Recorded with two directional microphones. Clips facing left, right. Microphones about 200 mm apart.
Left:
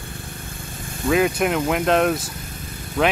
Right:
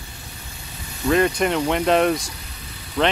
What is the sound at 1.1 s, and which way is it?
Speech, 5° left (ahead or behind).